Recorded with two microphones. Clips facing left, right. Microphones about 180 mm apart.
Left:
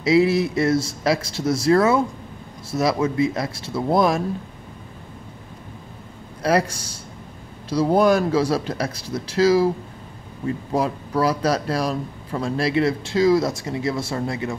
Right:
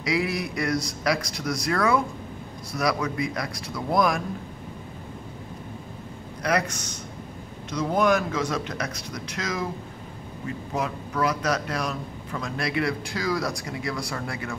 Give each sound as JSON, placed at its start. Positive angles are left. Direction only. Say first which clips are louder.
{"t": 0.0, "sound": "a man's voice", "louder": "left 9 dB", "side_deg": 25}
{"t": 6.4, "sound": "a man's voice", "louder": "left 5 dB", "side_deg": 30}
{"t": 10.7, "sound": "a man's voice", "louder": "left 6 dB", "side_deg": 35}